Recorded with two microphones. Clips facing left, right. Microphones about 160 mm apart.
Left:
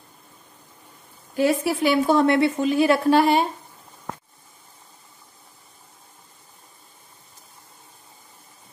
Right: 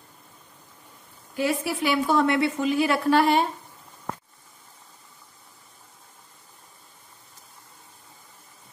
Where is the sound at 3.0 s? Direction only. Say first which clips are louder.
Even; 20° left (ahead or behind).